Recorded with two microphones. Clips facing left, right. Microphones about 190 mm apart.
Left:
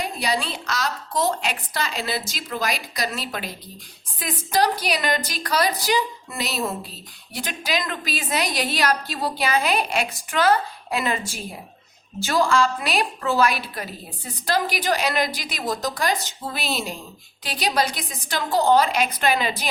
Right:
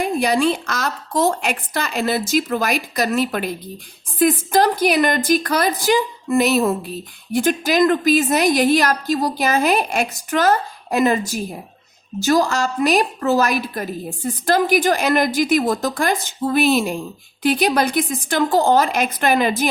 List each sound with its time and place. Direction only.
0.0 s a woman's voice: 50° right (ahead or behind)